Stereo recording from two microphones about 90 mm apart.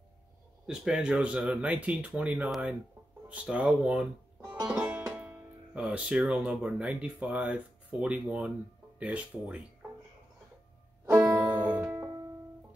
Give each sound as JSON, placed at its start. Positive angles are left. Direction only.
{"t": 0.7, "sound": "speech", "side_deg": -10}
{"t": 11.1, "sound": "music", "side_deg": -25}